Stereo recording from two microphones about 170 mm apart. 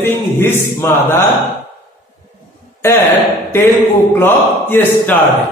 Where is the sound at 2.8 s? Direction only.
15° left (ahead or behind).